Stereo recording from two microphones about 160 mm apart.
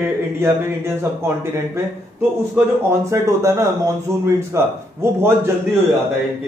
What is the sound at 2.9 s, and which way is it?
Speech, 20° right (ahead or behind).